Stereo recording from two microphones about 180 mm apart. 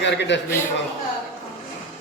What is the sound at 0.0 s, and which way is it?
Speech, 80° left.